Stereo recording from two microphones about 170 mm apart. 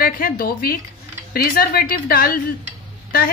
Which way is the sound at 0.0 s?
60° left (ahead or behind).